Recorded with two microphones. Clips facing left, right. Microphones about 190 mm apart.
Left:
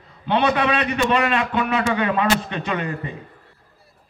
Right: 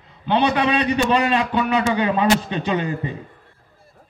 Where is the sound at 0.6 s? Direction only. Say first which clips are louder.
Right 2 dB; 30° right (ahead or behind).